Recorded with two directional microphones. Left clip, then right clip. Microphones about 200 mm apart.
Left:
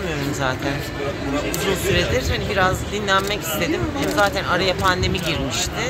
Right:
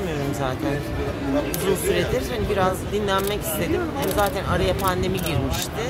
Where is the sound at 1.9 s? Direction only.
10° right (ahead or behind).